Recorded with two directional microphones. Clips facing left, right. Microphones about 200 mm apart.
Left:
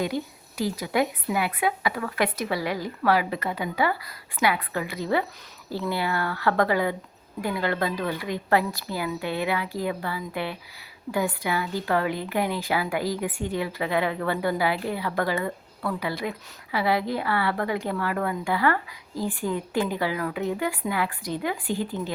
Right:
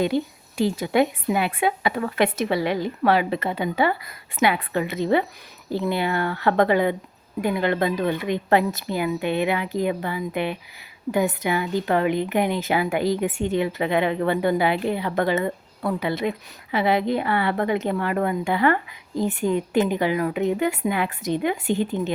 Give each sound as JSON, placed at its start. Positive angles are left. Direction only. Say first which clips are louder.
{"t": 0.0, "sound": "a woman's voice", "louder": "right 5 dB", "side_deg": -25}